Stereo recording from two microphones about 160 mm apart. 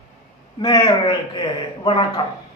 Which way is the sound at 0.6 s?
25° left (ahead or behind).